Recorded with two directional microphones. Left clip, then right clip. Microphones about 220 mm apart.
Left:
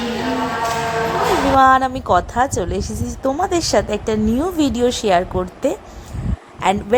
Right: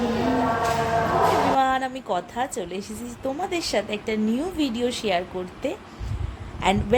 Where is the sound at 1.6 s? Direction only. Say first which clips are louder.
Left 10 dB; 25° left (ahead or behind).